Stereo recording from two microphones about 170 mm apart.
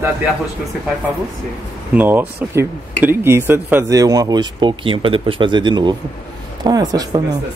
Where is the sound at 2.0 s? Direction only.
10° right (ahead or behind).